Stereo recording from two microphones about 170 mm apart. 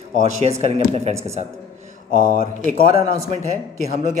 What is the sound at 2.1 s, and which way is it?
Speech, 50° left (ahead or behind).